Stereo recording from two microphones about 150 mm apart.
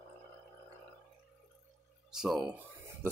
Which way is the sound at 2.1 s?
5° right (ahead or behind).